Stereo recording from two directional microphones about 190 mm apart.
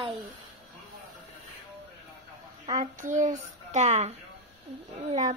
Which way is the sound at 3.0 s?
40° right (ahead or behind).